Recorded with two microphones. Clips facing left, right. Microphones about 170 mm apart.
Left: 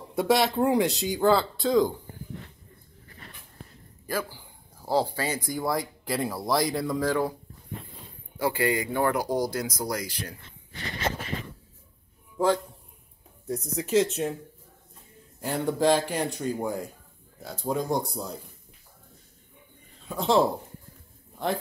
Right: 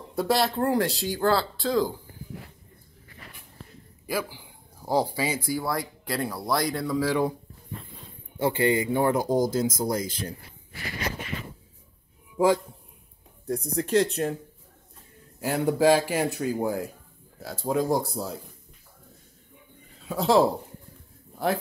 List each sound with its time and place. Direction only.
0.1 s speech: centre (ahead or behind)
4.1 s speech: 10° right (ahead or behind)
5.5 s speech: centre (ahead or behind)
8.4 s speech: 25° right (ahead or behind)
13.5 s speech: centre (ahead or behind)
15.4 s speech: 10° right (ahead or behind)
20.0 s speech: centre (ahead or behind)